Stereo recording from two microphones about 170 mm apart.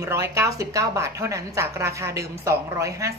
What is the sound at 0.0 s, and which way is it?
A woman's voice, 15° right (ahead or behind).